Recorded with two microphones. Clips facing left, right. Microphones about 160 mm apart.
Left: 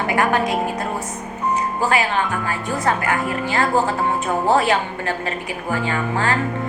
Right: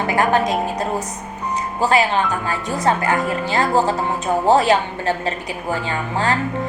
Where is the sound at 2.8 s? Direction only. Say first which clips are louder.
Right 3 dB; 35° right (ahead or behind).